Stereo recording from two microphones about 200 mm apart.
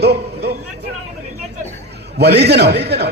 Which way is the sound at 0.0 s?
55° right (ahead or behind).